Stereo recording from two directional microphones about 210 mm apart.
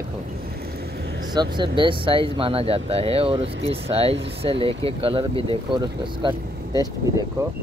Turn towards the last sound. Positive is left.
turn(degrees=-20)  # may be behind; listen again after turning